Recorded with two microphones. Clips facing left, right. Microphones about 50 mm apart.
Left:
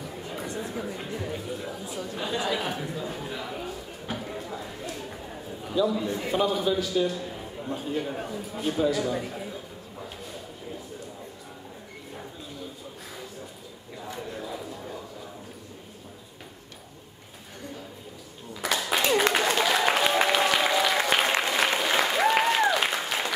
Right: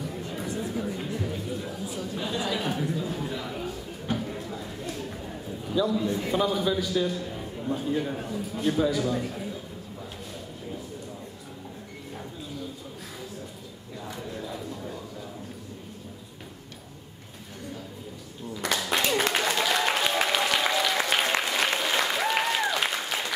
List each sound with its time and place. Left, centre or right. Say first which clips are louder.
0.0 s chatter: right 2 dB; centre
2.0 s speech: left 1 dB; centre
2.4 s a sound: right 1 dB; centre
5.6 s a man's voice: even; centre
14.0 s a sound: left 1 dB; centre
18.6 s applause: left 1 dB; centre